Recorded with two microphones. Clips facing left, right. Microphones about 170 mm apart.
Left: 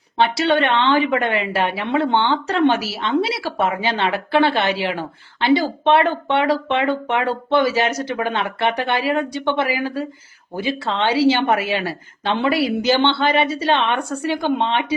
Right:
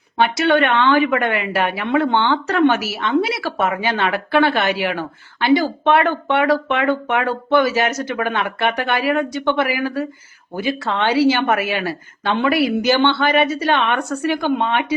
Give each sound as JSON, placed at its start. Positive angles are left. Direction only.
{"t": 0.2, "sound": "a woman's voice", "side_deg": 25}